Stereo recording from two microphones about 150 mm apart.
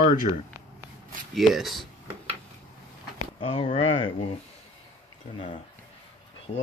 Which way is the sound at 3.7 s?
35° left (ahead or behind).